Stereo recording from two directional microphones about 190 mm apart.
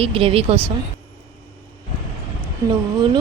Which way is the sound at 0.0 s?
30° right (ahead or behind).